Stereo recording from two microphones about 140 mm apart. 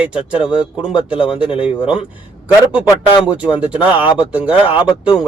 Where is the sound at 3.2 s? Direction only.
10° right (ahead or behind).